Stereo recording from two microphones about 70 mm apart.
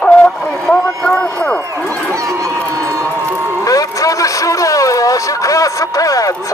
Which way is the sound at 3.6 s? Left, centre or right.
Left.